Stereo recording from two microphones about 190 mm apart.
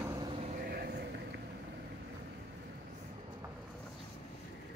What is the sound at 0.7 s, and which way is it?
Vehicle, 50° right (ahead or behind).